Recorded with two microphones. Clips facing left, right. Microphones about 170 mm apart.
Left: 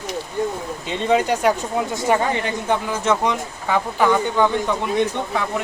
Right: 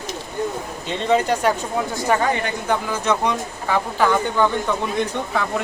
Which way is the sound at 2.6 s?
25° left (ahead or behind).